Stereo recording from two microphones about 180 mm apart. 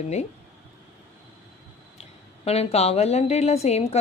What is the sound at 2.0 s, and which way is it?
Speech, 35° left (ahead or behind).